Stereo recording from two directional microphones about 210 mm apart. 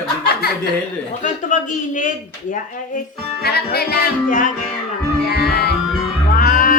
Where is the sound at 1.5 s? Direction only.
35° left (ahead or behind).